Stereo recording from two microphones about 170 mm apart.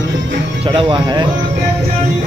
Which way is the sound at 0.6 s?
30° right (ahead or behind).